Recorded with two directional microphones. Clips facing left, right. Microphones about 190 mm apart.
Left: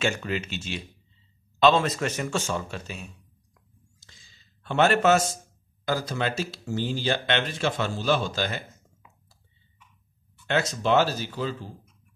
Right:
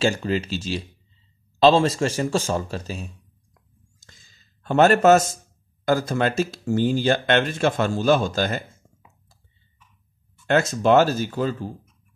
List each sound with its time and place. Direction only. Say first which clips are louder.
0.0 s a man's voice: right 5 dB; 35° right (ahead or behind)
4.0 s a sound: right 5 dB; 45° right (ahead or behind)
5.9 s speech: right 6 dB; 50° right (ahead or behind)
10.4 s speech: right 6 dB; 50° right (ahead or behind)